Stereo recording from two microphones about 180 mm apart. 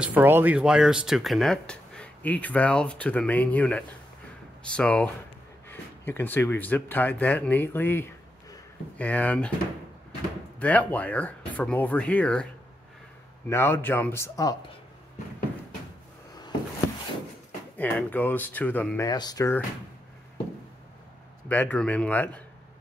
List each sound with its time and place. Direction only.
0.0 s speech: 10° right (ahead or behind); by 9.5 s 10° left (ahead or behind)
10.6 s speech: 10° left (ahead or behind)
13.5 s speech: 15° left (ahead or behind)
17.7 s speech: 10° left (ahead or behind)
19.0 s speech: 20° left (ahead or behind)
21.5 s speech: 10° left (ahead or behind)